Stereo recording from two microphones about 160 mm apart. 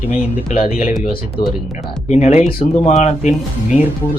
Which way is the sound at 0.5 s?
65° left (ahead or behind).